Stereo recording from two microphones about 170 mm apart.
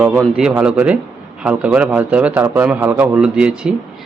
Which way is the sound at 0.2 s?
5° right (ahead or behind).